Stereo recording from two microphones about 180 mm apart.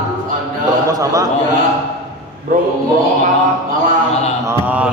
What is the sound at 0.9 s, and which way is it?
Speech, 20° right (ahead or behind).